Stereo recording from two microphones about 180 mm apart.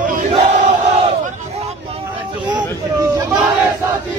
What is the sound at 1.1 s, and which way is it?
Battle cry, 35° right (ahead or behind).